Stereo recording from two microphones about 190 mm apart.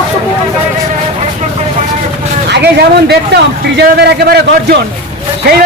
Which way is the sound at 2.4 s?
60° right (ahead or behind).